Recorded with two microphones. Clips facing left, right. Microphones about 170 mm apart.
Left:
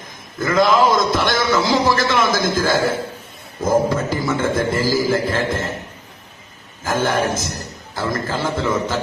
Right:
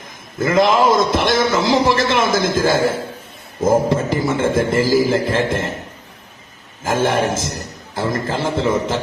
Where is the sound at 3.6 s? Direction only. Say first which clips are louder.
Right 2 dB; 25° right (ahead or behind).